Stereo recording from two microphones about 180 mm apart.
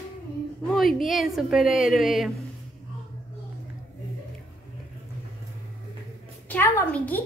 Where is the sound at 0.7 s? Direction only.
Centre (ahead or behind).